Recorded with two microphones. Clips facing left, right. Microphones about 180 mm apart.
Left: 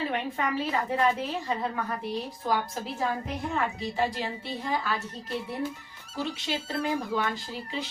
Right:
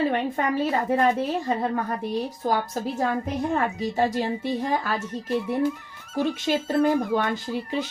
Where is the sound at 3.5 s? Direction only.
45° right (ahead or behind).